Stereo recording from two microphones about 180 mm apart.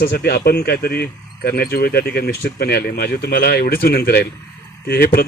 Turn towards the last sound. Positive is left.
turn(degrees=55)  # may be behind; listen again after turning